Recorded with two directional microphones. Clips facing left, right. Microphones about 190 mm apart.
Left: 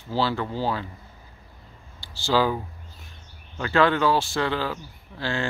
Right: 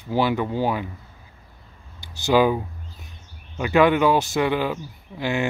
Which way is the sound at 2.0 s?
20° right (ahead or behind).